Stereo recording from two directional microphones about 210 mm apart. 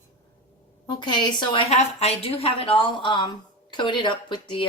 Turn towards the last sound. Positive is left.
turn(degrees=20)  # may be behind; listen again after turning